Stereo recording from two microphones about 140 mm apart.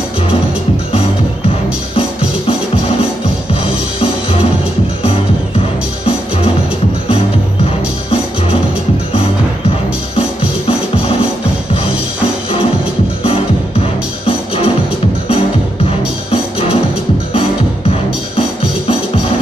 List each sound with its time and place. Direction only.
3.6 s music: 40° left (ahead or behind)
13.2 s music: 40° left (ahead or behind)